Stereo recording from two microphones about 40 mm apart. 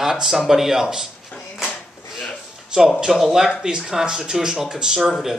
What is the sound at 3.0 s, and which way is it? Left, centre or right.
Speech, centre.